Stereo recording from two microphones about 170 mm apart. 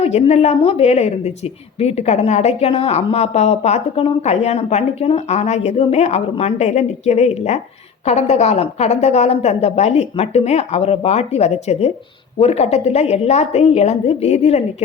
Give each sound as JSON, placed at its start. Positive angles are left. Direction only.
{"t": 0.0, "sound": "speech", "side_deg": 35}